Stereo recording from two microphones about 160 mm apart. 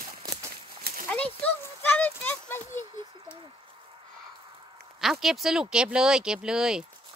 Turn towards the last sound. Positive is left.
turn(degrees=-5)  # may be behind; listen again after turning